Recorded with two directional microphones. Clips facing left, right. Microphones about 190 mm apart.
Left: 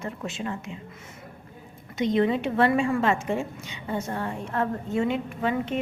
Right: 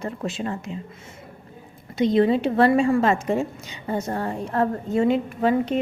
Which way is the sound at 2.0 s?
35° right (ahead or behind).